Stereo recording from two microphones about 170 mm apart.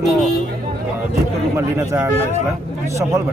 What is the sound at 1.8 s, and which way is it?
Speech, 15° right (ahead or behind).